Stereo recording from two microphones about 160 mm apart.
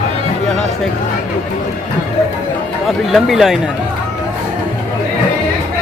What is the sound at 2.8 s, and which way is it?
Speech, centre (ahead or behind).